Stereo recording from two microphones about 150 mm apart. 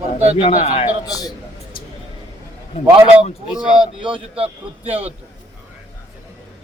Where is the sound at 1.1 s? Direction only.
25° left (ahead or behind).